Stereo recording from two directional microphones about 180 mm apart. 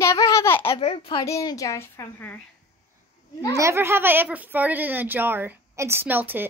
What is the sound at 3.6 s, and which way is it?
Speech, 15° right (ahead or behind).